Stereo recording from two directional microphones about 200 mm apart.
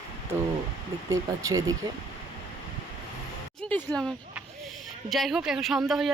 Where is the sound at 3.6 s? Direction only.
5° left (ahead or behind).